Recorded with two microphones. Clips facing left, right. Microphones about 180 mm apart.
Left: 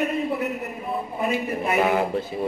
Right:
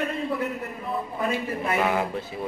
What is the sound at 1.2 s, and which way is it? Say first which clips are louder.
Speech: left 3 dB; 20° left (ahead or behind).